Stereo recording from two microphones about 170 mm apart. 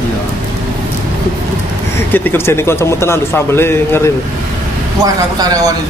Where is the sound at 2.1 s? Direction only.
10° left (ahead or behind).